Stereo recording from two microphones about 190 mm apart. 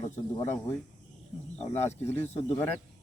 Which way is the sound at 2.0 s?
10° left (ahead or behind).